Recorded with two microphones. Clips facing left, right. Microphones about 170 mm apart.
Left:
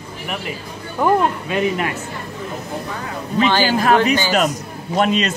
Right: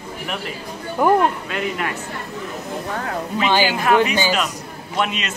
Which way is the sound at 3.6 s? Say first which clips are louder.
Left 2 dB; 40° left (ahead or behind).